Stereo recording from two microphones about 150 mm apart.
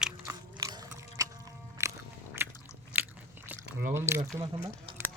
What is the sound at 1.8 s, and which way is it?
Biting, 20° right (ahead or behind).